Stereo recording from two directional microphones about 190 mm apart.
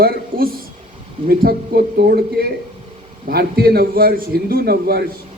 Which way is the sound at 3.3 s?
55° right (ahead or behind).